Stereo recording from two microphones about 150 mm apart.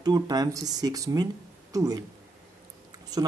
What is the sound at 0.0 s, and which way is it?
Speech, 25° right (ahead or behind).